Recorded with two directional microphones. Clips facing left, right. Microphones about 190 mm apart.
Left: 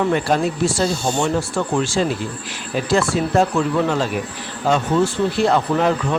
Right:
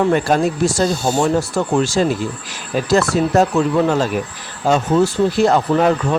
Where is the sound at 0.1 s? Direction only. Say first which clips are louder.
Right 3 dB; 45° right (ahead or behind).